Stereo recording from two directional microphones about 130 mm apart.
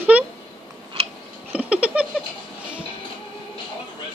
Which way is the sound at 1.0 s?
50° right (ahead or behind).